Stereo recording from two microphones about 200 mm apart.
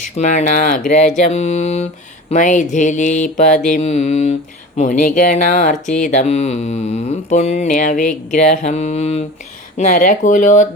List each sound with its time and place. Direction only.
0.2 s speech: 35° left (ahead or behind)